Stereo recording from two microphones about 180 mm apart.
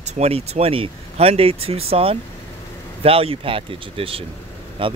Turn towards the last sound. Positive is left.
turn(degrees=-30)  # may be behind; listen again after turning